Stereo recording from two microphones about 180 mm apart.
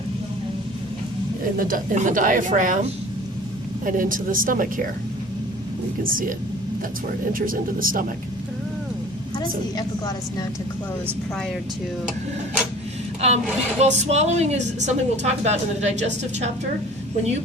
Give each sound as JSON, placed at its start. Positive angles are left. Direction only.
{"t": 1.5, "sound": "speech", "side_deg": -50}
{"t": 6.0, "sound": "speech", "side_deg": -50}
{"t": 7.3, "sound": "speech", "side_deg": -50}
{"t": 13.2, "sound": "speech", "side_deg": -35}